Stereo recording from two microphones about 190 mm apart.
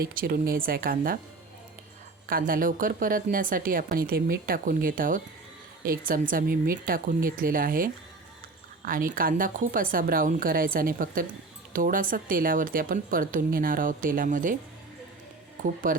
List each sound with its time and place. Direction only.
0.0 s speech: 50° right (ahead or behind)
2.2 s speech: 50° right (ahead or behind)
15.6 s speech: 45° right (ahead or behind)